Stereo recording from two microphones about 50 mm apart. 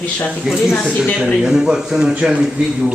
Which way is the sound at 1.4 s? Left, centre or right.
Centre.